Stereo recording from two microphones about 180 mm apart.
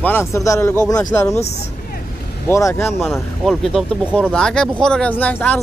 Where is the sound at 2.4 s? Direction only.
15° left (ahead or behind).